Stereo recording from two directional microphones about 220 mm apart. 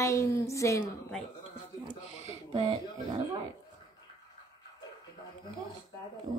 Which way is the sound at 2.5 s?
25° right (ahead or behind).